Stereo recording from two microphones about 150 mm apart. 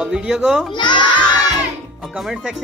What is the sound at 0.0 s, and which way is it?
Speech, 5° right (ahead or behind).